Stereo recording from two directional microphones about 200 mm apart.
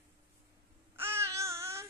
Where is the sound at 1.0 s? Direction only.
10° right (ahead or behind).